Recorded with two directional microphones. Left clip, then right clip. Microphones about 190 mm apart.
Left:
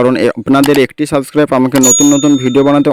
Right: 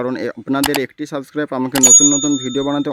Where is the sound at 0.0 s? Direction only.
40° left (ahead or behind).